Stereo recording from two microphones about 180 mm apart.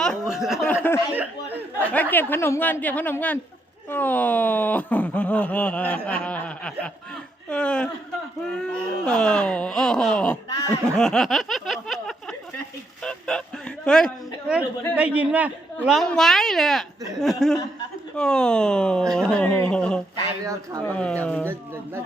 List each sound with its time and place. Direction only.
0.0 s a sound: centre (ahead or behind)
0.7 s speech: 10° left (ahead or behind)
1.1 s a sound: 10° right (ahead or behind)
1.9 s speech: 10° left (ahead or behind)
20.4 s speech: 20° right (ahead or behind)
20.8 s speech: 10° left (ahead or behind)